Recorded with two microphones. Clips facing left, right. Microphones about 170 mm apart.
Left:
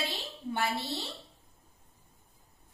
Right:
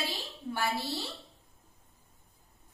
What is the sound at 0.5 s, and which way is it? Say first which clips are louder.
Speech: even; 20° left (ahead or behind).